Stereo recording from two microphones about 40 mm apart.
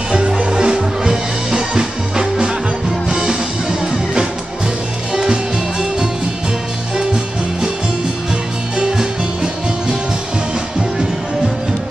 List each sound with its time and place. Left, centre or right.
0.4 s music: centre
5.1 s music: centre
8.7 s music: centre